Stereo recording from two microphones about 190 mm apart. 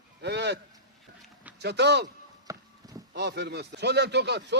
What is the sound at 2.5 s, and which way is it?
Horse, 15° right (ahead or behind).